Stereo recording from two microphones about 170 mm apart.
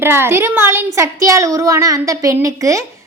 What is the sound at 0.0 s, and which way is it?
Speech, 15° right (ahead or behind).